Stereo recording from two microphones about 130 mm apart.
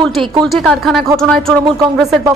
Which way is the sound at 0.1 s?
40° right (ahead or behind).